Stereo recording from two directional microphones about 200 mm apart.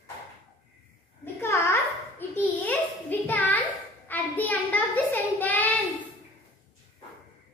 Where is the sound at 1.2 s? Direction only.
10° left (ahead or behind).